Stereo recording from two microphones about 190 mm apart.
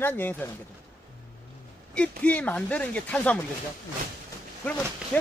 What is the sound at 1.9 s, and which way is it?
Speech, 5° left (ahead or behind).